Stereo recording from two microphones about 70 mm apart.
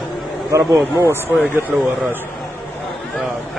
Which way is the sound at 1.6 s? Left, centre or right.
Right.